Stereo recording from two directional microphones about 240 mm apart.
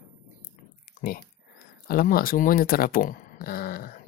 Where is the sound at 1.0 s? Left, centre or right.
Left.